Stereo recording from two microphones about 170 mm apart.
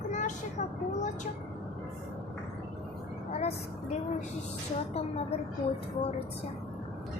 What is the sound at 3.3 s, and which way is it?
Vehicle, 40° left (ahead or behind).